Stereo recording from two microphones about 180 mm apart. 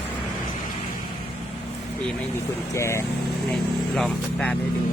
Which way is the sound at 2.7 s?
15° left (ahead or behind).